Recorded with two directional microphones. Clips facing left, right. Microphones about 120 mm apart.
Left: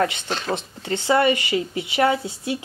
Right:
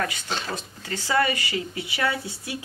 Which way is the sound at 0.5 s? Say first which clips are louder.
Left 7 dB; 25° left (ahead or behind).